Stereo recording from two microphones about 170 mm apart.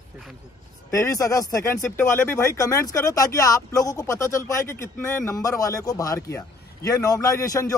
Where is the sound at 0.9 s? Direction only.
15° left (ahead or behind).